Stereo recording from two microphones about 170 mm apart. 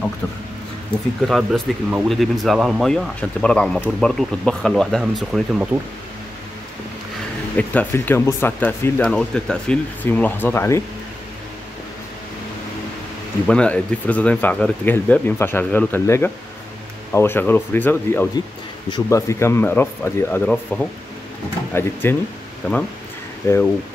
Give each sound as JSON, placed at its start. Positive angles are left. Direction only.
{"t": 1.2, "sound": "speech", "side_deg": 0}
{"t": 7.5, "sound": "speech", "side_deg": 10}
{"t": 13.5, "sound": "speech", "side_deg": 5}